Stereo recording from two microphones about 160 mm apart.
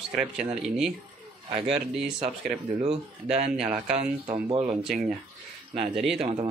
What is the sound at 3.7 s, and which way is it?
Speech, 5° right (ahead or behind).